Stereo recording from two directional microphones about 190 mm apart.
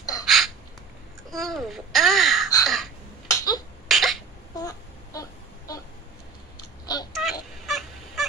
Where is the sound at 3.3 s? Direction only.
20° left (ahead or behind).